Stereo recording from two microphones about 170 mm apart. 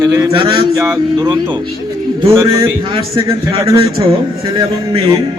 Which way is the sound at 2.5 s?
30° right (ahead or behind).